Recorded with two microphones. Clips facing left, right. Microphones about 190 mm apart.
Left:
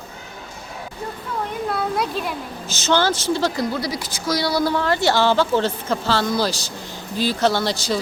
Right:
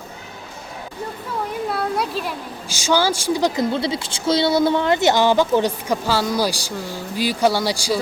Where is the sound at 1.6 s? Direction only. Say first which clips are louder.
Left 1 dB; centre (ahead or behind).